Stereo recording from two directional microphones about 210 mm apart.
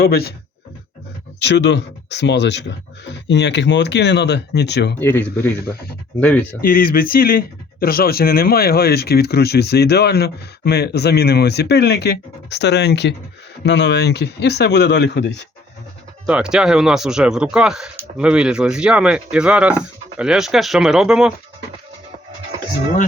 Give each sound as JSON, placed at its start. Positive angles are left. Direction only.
{"t": 0.0, "sound": "speech", "side_deg": 50}
{"t": 1.5, "sound": "speech", "side_deg": 55}
{"t": 4.9, "sound": "speech", "side_deg": 10}
{"t": 6.6, "sound": "speech", "side_deg": 45}
{"t": 16.2, "sound": "speech", "side_deg": -5}